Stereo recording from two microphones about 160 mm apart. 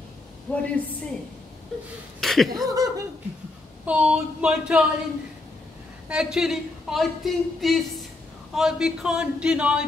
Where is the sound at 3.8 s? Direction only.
10° right (ahead or behind).